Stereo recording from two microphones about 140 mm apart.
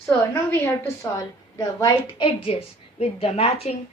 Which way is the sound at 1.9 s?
40° left (ahead or behind).